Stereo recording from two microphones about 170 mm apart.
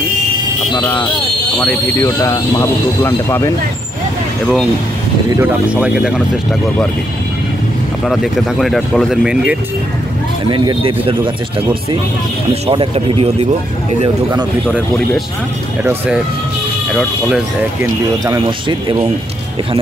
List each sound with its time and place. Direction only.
1.6 s speech: 5° left (ahead or behind)
2.0 s speech: 20° left (ahead or behind)
5.4 s speech: 5° right (ahead or behind)
8.0 s speech: centre (ahead or behind)
10.5 s speech: 25° right (ahead or behind)
12.6 s speech: 35° right (ahead or behind)
15.8 s speech: 15° right (ahead or behind)
18.2 s speech: 25° right (ahead or behind)